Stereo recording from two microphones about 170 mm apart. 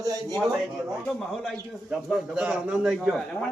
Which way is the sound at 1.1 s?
Centre (ahead or behind).